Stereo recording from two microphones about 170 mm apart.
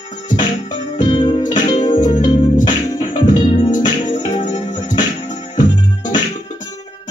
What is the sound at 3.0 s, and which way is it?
Music, 50° left (ahead or behind).